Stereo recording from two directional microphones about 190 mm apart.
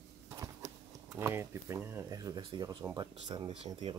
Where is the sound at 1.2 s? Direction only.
15° right (ahead or behind).